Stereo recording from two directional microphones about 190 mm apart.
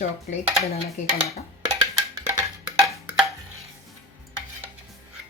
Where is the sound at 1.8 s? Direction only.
20° right (ahead or behind).